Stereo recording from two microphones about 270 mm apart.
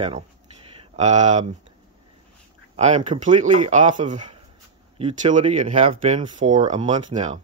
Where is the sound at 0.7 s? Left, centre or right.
Right.